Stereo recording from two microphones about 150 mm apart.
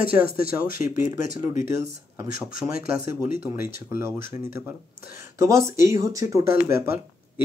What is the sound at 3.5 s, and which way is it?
Speech, 15° right (ahead or behind).